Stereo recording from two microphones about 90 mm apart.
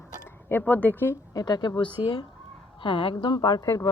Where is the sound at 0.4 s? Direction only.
20° left (ahead or behind).